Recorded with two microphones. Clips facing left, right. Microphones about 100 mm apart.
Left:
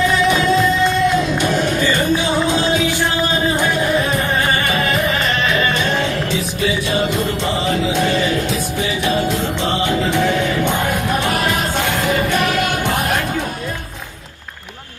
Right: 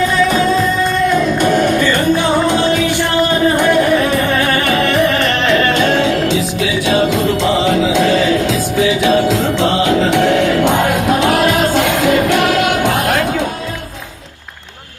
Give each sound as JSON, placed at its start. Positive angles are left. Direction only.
{"t": 1.4, "sound": "music", "side_deg": -50}